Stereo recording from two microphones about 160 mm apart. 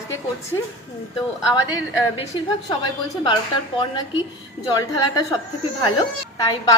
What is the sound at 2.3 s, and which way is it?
A woman's voice, 30° left (ahead or behind).